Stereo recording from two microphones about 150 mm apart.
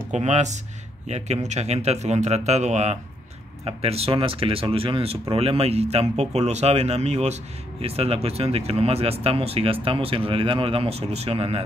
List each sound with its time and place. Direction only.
0.1 s speech: 50° right (ahead or behind)